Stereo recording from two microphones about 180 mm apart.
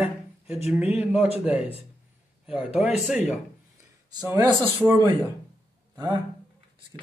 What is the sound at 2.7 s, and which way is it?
Speech, 5° right (ahead or behind).